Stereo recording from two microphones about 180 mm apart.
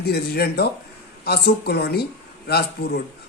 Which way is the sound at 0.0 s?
60° left (ahead or behind).